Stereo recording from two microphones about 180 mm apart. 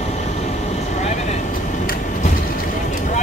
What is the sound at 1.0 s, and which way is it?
Vehicle, 40° left (ahead or behind).